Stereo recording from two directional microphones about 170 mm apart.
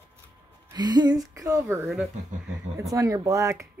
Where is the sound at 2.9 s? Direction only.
20° right (ahead or behind).